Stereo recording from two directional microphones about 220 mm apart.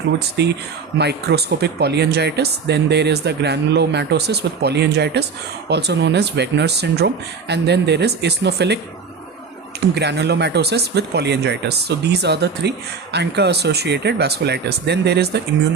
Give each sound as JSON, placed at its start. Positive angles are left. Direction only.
{"t": 0.4, "sound": "speech", "side_deg": -50}
{"t": 9.9, "sound": "speech", "side_deg": -50}